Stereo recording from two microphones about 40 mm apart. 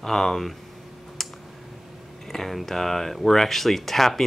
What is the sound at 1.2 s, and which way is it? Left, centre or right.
Clicking, centre.